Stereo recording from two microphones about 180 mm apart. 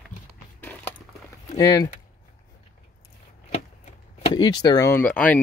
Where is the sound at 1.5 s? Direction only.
20° left (ahead or behind).